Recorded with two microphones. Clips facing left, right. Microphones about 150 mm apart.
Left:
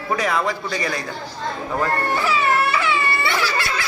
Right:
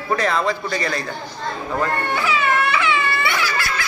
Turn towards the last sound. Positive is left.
turn(degrees=30)  # may be behind; listen again after turning